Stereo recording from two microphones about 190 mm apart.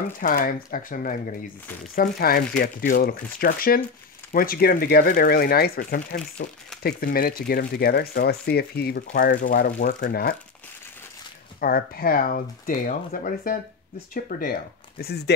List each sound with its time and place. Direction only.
0.2 s speech: 50° left (ahead or behind)
11.6 s speech: 50° left (ahead or behind)